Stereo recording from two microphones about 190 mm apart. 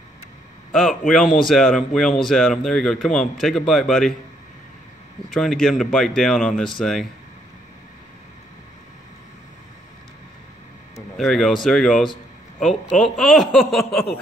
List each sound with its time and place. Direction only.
0.7 s speech: centre (ahead or behind)
5.3 s speech: centre (ahead or behind)
11.0 s speech: centre (ahead or behind)